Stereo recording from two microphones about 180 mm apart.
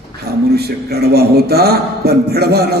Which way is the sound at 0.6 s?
60° right (ahead or behind).